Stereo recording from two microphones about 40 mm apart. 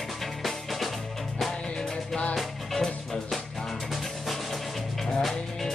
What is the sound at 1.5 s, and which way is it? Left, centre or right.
Music, centre.